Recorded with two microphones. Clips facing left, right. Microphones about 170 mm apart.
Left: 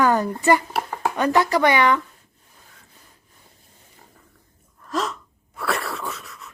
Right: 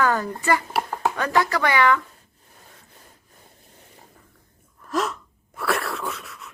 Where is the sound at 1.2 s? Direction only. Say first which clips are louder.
Left 5 dB; 20° left (ahead or behind).